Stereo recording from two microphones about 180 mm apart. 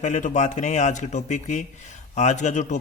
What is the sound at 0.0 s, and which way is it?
A man's voice, 40° left (ahead or behind).